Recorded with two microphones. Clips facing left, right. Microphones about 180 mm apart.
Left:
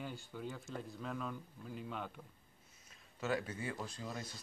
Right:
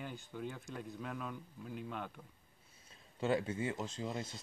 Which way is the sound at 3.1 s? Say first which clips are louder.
Right 4 dB; 25° right (ahead or behind).